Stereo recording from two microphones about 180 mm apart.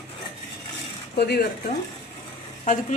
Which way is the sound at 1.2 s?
65° left (ahead or behind).